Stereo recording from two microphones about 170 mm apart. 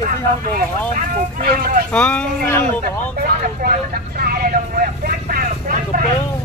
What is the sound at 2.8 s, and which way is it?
Vehicle, 65° right (ahead or behind).